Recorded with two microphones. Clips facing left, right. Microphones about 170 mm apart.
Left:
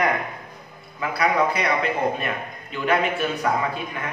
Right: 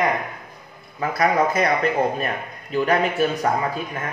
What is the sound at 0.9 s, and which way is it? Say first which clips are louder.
A man's voice: right 2 dB; 45° right (ahead or behind).